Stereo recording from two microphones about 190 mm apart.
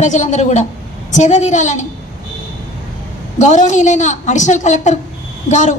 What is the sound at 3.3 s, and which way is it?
A woman's voice, 40° left (ahead or behind).